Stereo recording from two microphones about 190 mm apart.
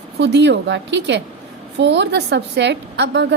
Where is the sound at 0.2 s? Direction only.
65° right (ahead or behind).